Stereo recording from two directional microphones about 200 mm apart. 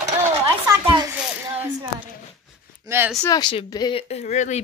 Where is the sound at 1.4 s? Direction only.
10° right (ahead or behind).